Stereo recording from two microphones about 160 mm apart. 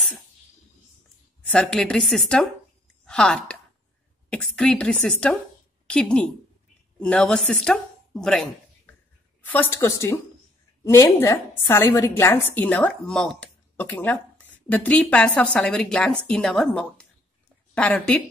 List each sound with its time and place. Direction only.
1.4 s a woman's voice: 5° left (ahead or behind)